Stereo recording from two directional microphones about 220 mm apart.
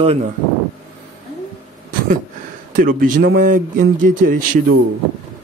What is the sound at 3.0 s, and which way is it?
Speech, 40° right (ahead or behind).